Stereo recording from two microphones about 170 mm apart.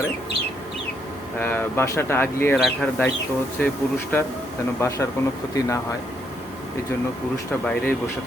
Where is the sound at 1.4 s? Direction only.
10° left (ahead or behind).